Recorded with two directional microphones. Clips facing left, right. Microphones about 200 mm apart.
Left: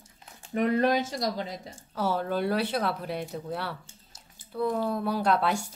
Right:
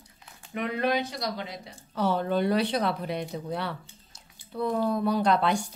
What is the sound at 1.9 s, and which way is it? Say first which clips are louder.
Speech: right 2 dB; 5° left (ahead or behind).